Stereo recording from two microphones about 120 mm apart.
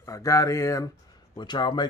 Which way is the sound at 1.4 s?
40° left (ahead or behind).